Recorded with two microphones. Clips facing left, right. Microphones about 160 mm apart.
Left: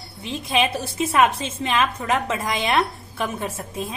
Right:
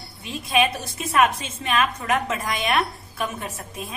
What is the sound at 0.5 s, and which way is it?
A woman's voice, 30° left (ahead or behind).